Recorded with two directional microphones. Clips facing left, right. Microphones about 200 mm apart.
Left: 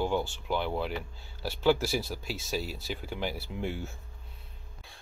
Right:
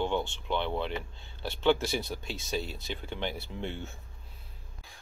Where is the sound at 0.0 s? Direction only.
5° left (ahead or behind).